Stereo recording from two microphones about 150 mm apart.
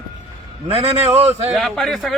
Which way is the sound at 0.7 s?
40° right (ahead or behind).